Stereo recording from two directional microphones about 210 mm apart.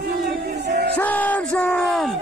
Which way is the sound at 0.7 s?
50° right (ahead or behind).